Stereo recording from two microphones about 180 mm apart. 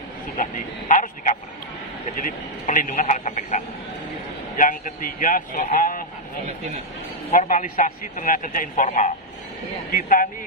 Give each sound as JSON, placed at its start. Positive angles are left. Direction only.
{"t": 0.4, "sound": "a sound", "side_deg": 45}
{"t": 2.1, "sound": "telephone", "side_deg": 45}
{"t": 4.6, "sound": "a man's voice", "side_deg": 50}
{"t": 7.2, "sound": "a man's voice", "side_deg": 50}